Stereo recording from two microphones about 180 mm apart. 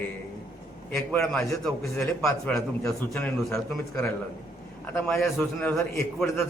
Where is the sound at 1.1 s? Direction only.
Centre (ahead or behind).